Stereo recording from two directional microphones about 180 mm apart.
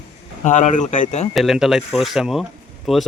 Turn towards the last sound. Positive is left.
turn(degrees=0)  # may be behind; listen again after turning